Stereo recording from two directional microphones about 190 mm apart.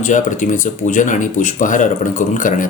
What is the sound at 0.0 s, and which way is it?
Speech, 40° left (ahead or behind).